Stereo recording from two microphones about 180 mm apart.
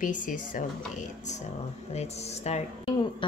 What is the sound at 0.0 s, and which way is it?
Speech, 45° left (ahead or behind).